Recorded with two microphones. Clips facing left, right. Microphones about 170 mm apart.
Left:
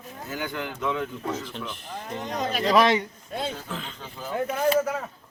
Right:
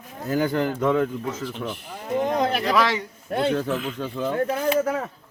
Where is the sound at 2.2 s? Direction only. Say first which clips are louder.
Right 8 dB; 55° right (ahead or behind).